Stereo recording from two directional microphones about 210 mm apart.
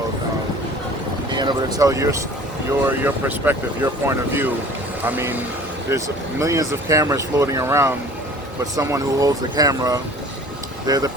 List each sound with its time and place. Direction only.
1.3 s speech: 20° right (ahead or behind)